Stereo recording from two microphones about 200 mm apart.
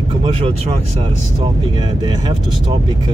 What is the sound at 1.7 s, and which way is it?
Speech, 20° right (ahead or behind).